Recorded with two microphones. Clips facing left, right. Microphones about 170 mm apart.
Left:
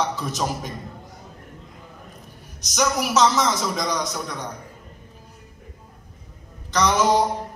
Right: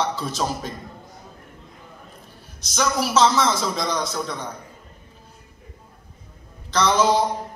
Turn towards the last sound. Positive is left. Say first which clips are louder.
# even
turn(degrees=15)  # may be behind; listen again after turning